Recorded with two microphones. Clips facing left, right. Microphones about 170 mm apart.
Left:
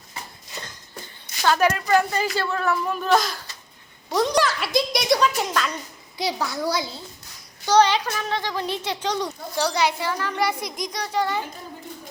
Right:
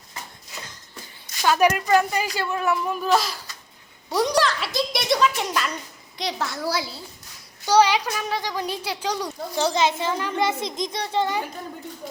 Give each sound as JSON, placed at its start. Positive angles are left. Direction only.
{"t": 1.5, "sound": "a child's voice", "side_deg": -15}
{"t": 3.1, "sound": "a child's voice", "side_deg": -5}
{"t": 9.6, "sound": "a child's voice", "side_deg": -20}